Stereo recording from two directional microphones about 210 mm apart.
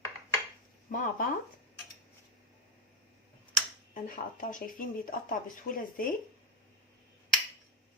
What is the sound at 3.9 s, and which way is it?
Speech, 40° left (ahead or behind).